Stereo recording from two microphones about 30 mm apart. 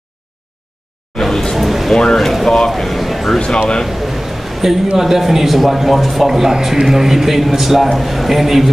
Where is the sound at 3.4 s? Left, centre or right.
Left.